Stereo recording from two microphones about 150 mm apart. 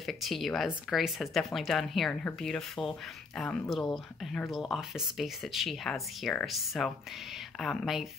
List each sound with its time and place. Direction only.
0.0 s speech: centre (ahead or behind)